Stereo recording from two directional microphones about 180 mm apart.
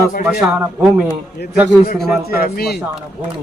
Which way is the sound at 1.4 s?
65° left (ahead or behind).